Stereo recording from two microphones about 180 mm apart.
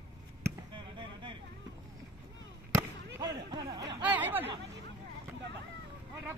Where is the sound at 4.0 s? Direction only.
10° right (ahead or behind).